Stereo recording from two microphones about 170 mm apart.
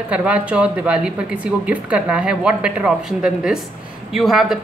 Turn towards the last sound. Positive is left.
turn(degrees=0)  # may be behind; listen again after turning